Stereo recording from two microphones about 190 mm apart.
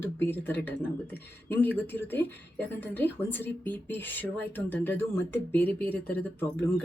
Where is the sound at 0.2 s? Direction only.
10° left (ahead or behind).